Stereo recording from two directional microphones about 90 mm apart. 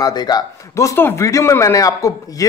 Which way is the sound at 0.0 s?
50° left (ahead or behind).